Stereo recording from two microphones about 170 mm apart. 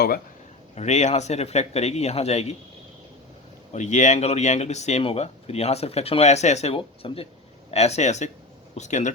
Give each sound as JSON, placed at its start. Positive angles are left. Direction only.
{"t": 0.8, "sound": "speech", "side_deg": 45}
{"t": 3.7, "sound": "speech", "side_deg": 45}